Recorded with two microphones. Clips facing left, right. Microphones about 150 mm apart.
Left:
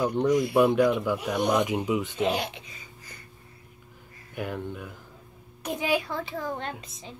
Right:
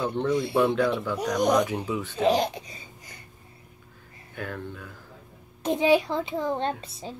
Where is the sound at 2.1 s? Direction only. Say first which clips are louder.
Right 4 dB; 35° right (ahead or behind).